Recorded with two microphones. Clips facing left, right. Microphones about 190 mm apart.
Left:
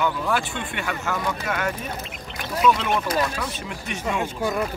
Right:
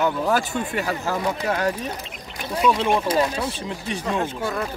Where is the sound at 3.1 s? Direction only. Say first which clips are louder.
Right 3 dB; 30° right (ahead or behind).